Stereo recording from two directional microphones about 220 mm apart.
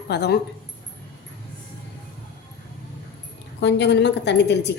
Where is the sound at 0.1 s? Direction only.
50° left (ahead or behind).